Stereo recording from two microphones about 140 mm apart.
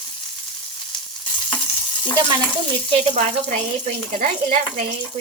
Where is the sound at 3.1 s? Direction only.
60° right (ahead or behind).